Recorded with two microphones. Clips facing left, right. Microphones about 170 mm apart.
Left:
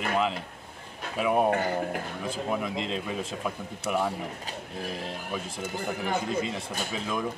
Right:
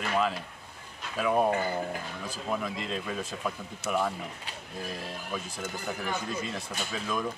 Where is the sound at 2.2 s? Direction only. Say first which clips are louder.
Left 2 dB; 20° left (ahead or behind).